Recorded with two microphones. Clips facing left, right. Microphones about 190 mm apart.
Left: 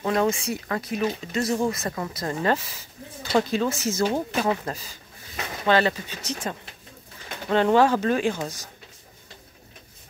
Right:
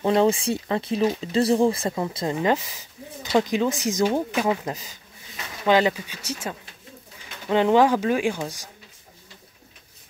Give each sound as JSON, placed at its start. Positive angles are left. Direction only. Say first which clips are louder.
{"t": 0.0, "sound": "speech", "louder": "right 4 dB", "side_deg": -30}